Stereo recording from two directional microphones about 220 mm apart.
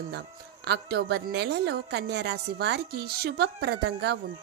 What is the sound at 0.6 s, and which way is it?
A woman's voice, 50° right (ahead or behind).